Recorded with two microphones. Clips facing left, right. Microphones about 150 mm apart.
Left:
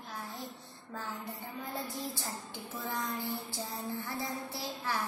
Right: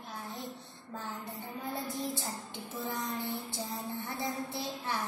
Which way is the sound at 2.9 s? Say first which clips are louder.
Left 1 dB; 20° right (ahead or behind).